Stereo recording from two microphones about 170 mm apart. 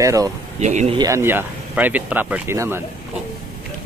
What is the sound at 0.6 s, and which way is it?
Speech, 45° right (ahead or behind).